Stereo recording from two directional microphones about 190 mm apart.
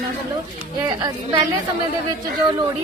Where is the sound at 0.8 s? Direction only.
25° right (ahead or behind).